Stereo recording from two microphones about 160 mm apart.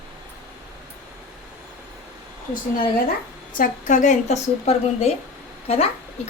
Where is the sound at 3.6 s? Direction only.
50° left (ahead or behind).